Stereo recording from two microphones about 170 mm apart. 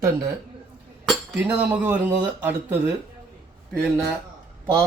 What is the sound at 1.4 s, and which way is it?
Speech, 10° right (ahead or behind).